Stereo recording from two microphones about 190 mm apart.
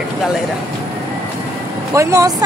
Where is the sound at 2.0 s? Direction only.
15° right (ahead or behind).